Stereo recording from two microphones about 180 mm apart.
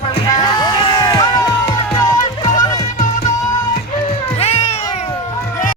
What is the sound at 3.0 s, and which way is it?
Music, 45° left (ahead or behind).